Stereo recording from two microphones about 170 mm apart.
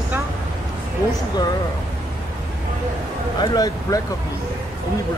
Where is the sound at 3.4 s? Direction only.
20° left (ahead or behind).